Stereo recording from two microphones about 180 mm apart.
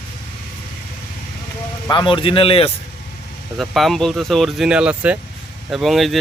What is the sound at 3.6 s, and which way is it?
Speech, centre (ahead or behind).